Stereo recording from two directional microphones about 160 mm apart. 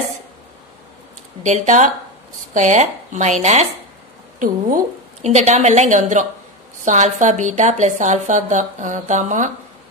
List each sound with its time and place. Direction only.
1.4 s a woman's voice: 50° right (ahead or behind)